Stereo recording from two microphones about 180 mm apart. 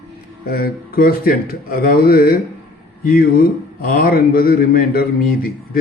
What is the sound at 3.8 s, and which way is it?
A man's voice, 55° left (ahead or behind).